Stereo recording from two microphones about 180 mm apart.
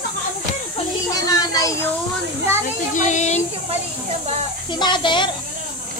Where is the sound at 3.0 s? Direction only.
40° left (ahead or behind).